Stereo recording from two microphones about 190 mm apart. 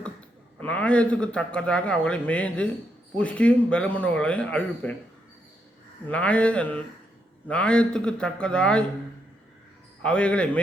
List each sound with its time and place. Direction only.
0.0 s a man's voice: 5° left (ahead or behind)
6.1 s a man's voice: 5° left (ahead or behind)
10.0 s a man's voice: 5° left (ahead or behind)